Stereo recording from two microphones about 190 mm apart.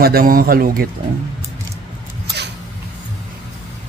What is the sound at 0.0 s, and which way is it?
Speech, 50° right (ahead or behind).